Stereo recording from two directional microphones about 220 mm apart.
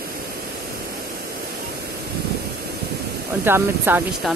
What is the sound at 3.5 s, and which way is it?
Speech, 10° right (ahead or behind).